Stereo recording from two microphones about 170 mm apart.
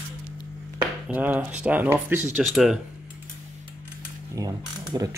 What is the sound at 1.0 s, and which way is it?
Speech, 10° right (ahead or behind).